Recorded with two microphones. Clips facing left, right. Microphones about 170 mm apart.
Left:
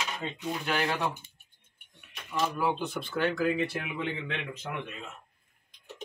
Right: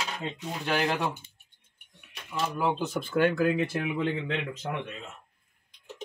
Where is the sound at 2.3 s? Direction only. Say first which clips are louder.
Even; 45° right (ahead or behind).